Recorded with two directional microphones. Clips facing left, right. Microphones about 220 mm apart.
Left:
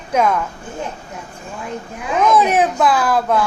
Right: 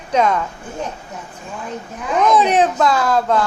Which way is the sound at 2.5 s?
10° left (ahead or behind).